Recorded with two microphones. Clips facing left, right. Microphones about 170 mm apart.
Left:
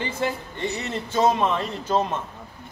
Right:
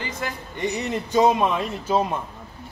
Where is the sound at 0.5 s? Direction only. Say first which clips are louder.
Right 3 dB; 15° right (ahead or behind).